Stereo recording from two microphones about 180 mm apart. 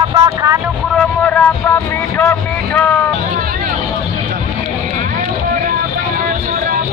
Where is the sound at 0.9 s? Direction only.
5° left (ahead or behind).